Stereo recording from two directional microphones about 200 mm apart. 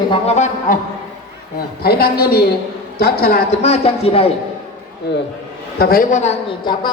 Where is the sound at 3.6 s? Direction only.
30° left (ahead or behind).